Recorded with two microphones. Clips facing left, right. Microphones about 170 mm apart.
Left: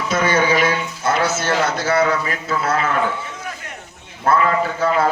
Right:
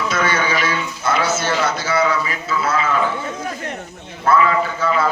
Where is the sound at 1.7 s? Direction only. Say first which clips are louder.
Left 1 dB; 55° left (ahead or behind).